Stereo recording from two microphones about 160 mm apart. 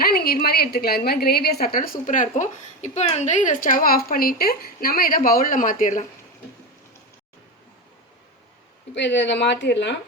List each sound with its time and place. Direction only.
0.0 s a woman's voice: 75° left (ahead or behind); by 6.1 s 50° left (ahead or behind)
9.0 s speech: 90° left